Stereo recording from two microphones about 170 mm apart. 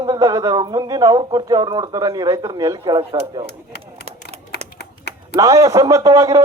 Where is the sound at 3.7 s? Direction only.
70° left (ahead or behind).